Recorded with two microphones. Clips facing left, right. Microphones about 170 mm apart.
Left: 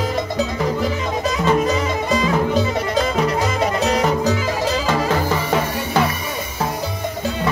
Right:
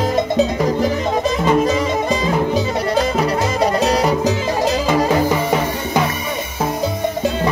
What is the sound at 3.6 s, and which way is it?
Music, 35° right (ahead or behind).